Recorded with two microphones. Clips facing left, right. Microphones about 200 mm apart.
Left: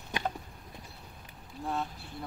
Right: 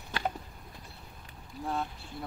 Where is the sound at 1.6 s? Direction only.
Centre (ahead or behind).